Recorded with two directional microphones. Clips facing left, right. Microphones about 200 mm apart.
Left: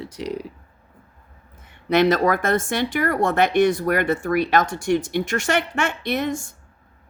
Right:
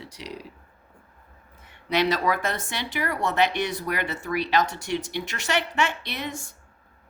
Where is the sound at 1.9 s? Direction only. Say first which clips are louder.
Left 6 dB; 50° left (ahead or behind).